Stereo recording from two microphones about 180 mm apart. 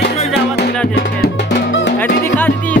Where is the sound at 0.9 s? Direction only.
75° left (ahead or behind).